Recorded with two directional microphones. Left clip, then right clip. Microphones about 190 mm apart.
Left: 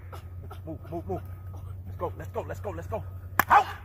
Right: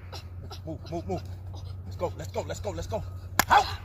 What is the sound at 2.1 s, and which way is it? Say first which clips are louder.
Speech: right 1 dB; 25° right (ahead or behind).